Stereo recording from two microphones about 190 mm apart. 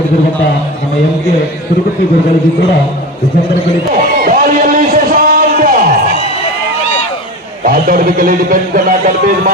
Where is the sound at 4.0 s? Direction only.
50° right (ahead or behind).